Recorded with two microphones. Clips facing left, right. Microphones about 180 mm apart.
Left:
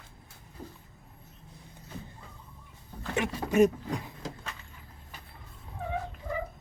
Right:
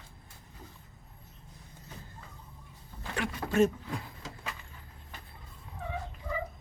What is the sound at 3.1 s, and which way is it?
Speech, 20° left (ahead or behind).